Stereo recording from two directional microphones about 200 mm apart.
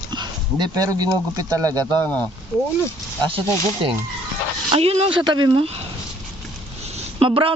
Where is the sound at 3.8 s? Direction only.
25° right (ahead or behind).